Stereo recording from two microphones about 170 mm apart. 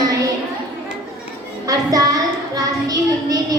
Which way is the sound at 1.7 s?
20° right (ahead or behind).